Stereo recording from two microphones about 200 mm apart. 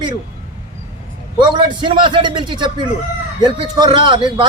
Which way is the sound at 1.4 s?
25° right (ahead or behind).